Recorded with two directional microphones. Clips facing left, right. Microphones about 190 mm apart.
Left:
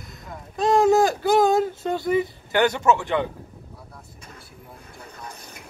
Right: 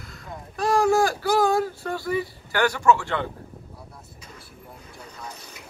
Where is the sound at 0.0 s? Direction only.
20° left (ahead or behind).